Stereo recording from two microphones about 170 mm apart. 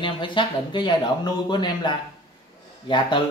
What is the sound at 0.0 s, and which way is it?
Speech, 30° left (ahead or behind).